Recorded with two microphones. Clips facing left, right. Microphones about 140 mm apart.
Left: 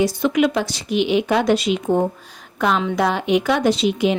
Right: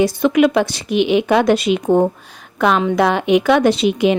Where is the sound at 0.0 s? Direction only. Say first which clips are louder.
Right 4 dB; 60° right (ahead or behind).